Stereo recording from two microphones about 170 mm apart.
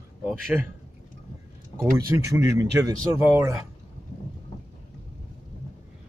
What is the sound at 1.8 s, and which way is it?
Speech, 20° right (ahead or behind).